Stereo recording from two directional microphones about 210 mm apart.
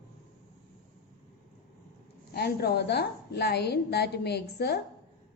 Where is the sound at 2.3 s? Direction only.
50° left (ahead or behind).